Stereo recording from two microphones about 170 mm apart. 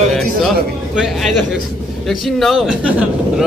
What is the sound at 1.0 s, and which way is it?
A man's voice, centre (ahead or behind).